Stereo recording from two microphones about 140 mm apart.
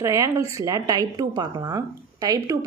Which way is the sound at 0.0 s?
20° right (ahead or behind).